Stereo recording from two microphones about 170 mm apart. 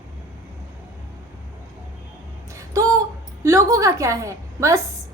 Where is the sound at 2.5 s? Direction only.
20° right (ahead or behind).